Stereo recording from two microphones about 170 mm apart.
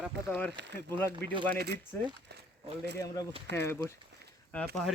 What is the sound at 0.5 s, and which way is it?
Speech, 90° right.